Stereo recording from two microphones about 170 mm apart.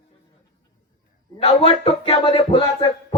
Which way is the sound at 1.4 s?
35° left (ahead or behind).